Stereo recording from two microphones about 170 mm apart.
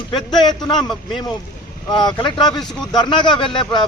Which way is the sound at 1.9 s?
25° left (ahead or behind).